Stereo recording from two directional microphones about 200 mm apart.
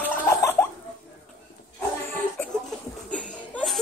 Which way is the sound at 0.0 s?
10° left (ahead or behind).